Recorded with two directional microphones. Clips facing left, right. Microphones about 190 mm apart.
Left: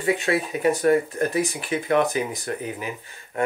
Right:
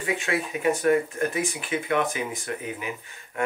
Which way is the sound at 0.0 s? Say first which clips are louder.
Left 5 dB; 35° left (ahead or behind).